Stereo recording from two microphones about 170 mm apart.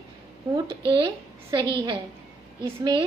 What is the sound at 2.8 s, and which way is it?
Speech, 25° right (ahead or behind).